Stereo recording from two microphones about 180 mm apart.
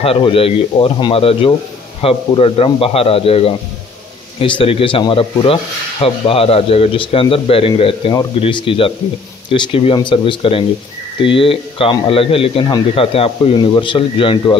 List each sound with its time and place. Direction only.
0.0 s speech: 30° left (ahead or behind)